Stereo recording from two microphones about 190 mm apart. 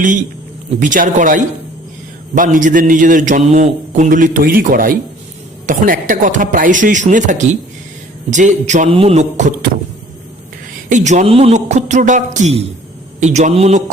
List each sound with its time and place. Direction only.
0.8 s a man's voice: 45° right (ahead or behind)
10.8 s a man's voice: 40° right (ahead or behind)